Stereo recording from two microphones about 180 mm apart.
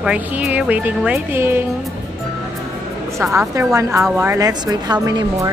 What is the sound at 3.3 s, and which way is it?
Speech, 15° right (ahead or behind).